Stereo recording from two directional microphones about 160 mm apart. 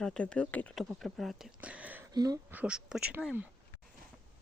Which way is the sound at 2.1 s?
25° right (ahead or behind).